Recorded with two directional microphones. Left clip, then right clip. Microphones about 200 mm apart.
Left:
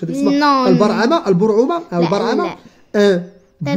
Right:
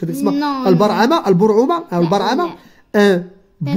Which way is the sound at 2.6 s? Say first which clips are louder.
Even; 30° right (ahead or behind).